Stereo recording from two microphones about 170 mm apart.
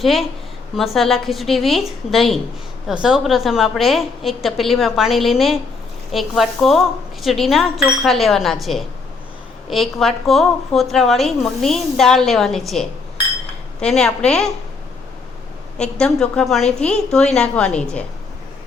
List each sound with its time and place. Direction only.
0.0 s a woman's voice: centre (ahead or behind)
15.8 s a woman's voice: 5° left (ahead or behind)